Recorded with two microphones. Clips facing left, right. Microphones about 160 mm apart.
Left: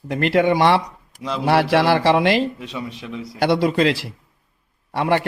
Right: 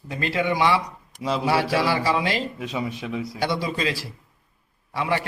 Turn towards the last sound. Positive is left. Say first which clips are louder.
# left 6 dB
turn(degrees=60)  # may be behind; listen again after turning